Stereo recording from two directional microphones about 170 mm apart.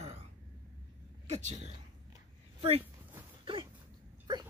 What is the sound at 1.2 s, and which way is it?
Speech, 40° right (ahead or behind).